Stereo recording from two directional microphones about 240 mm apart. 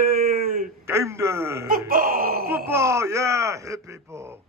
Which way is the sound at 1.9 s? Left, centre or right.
Right.